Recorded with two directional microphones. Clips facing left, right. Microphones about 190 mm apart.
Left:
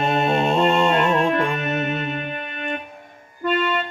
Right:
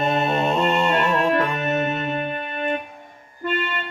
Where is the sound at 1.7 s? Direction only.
40° right (ahead or behind).